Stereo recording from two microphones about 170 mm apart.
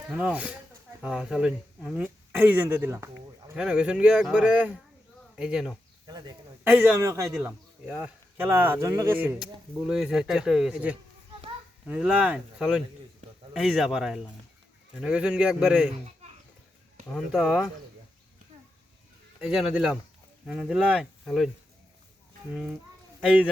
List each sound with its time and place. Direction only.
0.1 s speech: 5° right (ahead or behind)
6.1 s speech: 25° right (ahead or behind)
6.7 s speech: 5° right (ahead or behind)
7.0 s speech: 20° right (ahead or behind)
7.3 s speech: 5° right (ahead or behind)
17.2 s speech: 5° right (ahead or behind)
19.4 s speech: centre (ahead or behind)